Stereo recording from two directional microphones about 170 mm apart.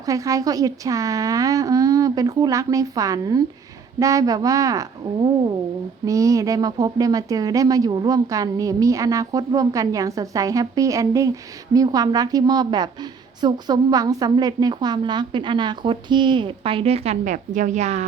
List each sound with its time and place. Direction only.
0.0 s a woman's voice: 20° right (ahead or behind); by 18.0 s 40° right (ahead or behind)